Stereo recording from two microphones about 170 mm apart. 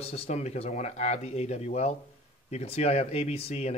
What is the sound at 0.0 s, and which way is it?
Speech, 35° left (ahead or behind).